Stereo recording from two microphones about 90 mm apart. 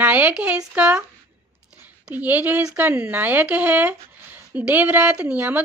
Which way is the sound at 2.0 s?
20° right (ahead or behind).